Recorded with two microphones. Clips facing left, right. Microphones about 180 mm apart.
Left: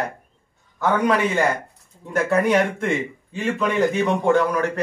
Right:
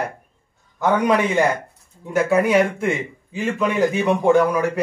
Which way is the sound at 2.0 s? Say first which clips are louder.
Right 2 dB; 5° right (ahead or behind).